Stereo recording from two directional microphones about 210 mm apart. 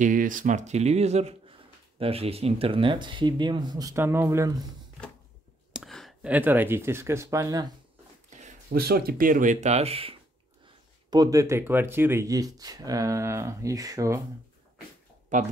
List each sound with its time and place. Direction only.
0.0 s speech: 40° right (ahead or behind); by 4.6 s 15° right (ahead or behind)
5.7 s speech: centre (ahead or behind); by 7.7 s 15° right (ahead or behind)
8.6 s speech: 50° right (ahead or behind); by 14.2 s 15° right (ahead or behind)
15.3 s speech: 35° right (ahead or behind)